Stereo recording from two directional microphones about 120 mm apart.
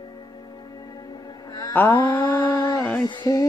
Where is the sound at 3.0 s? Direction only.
40° left (ahead or behind).